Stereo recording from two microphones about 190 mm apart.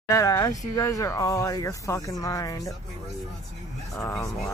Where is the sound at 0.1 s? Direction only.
15° left (ahead or behind).